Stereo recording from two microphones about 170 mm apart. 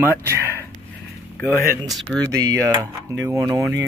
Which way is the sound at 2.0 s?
20° right (ahead or behind).